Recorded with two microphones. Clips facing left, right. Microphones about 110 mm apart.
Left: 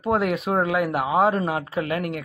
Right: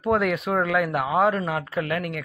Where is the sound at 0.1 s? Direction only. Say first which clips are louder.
Even; 30° left (ahead or behind).